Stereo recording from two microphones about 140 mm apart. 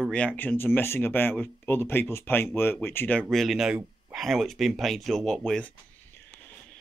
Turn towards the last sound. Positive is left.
turn(degrees=5)  # may be behind; listen again after turning